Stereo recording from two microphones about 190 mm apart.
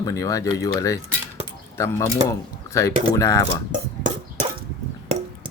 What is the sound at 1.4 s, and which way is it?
Keys jangling, 15° left (ahead or behind).